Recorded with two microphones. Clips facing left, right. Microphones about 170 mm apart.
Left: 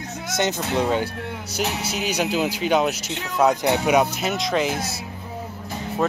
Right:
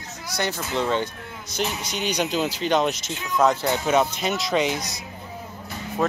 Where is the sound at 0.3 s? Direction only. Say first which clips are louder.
Left 4 dB; 20° left (ahead or behind).